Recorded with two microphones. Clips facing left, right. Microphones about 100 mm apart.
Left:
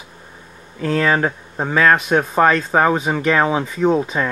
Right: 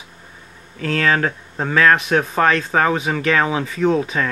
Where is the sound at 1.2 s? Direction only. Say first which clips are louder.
Left 1 dB; 15° left (ahead or behind).